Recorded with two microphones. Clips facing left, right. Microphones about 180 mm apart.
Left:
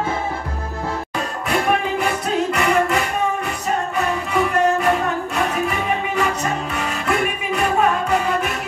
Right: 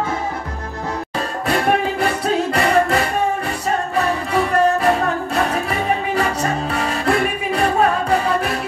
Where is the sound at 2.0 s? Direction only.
35° right (ahead or behind).